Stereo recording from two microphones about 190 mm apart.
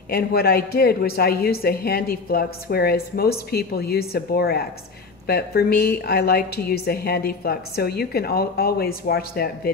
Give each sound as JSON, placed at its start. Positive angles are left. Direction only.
{"t": 0.1, "sound": "speech", "side_deg": 55}